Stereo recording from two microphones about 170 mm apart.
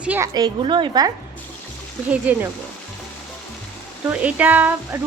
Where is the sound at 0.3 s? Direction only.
25° right (ahead or behind).